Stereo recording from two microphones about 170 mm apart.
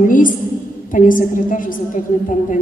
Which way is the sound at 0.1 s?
50° left (ahead or behind).